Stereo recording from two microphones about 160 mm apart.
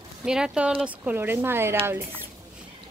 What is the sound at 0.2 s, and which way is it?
Speech, 5° right (ahead or behind).